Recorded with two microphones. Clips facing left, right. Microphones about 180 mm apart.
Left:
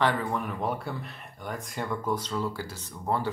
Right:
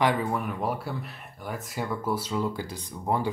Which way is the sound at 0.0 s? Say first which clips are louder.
Right 2 dB; 10° right (ahead or behind).